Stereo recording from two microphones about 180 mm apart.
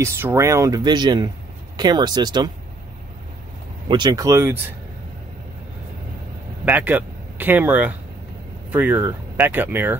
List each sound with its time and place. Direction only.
0.0 s speech: 15° right (ahead or behind)
3.9 s speech: 20° right (ahead or behind)
6.6 s speech: 10° right (ahead or behind)